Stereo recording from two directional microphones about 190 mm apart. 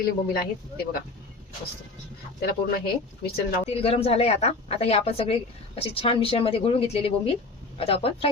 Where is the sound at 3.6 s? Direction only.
30° left (ahead or behind).